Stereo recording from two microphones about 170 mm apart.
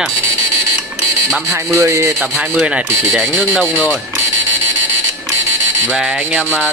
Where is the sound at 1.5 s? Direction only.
15° right (ahead or behind).